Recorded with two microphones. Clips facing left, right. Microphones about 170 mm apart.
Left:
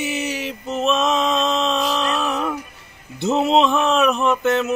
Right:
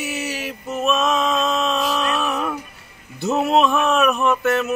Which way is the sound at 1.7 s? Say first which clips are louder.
Even; centre (ahead or behind).